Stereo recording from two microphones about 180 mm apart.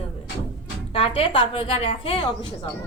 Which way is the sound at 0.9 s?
30° left (ahead or behind).